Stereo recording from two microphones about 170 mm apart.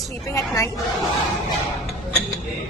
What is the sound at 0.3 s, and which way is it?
Speech, 20° left (ahead or behind).